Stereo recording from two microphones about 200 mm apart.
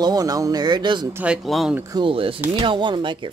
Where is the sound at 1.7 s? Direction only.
15° right (ahead or behind).